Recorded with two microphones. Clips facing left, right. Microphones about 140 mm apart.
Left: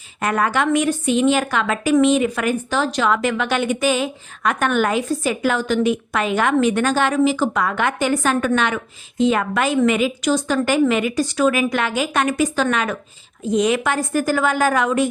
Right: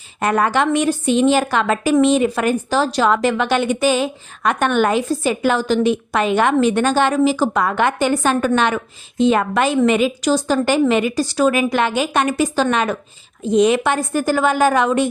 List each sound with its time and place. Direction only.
0.2 s a woman's voice: 30° right (ahead or behind)